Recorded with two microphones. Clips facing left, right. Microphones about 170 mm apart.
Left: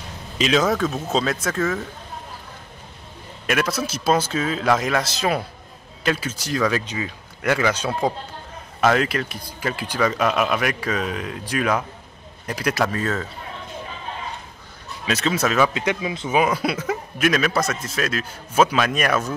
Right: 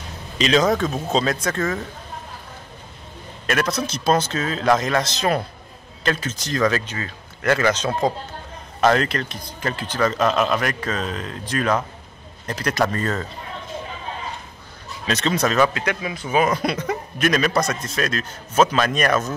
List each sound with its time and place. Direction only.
0.4 s speech: 5° left (ahead or behind)
3.4 s speech: 5° left (ahead or behind)
15.0 s speech: 5° left (ahead or behind)
15.7 s speech: 20° left (ahead or behind)
16.4 s speech: 5° left (ahead or behind)